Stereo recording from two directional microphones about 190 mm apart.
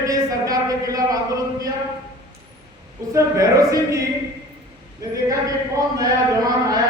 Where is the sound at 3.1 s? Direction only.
15° right (ahead or behind).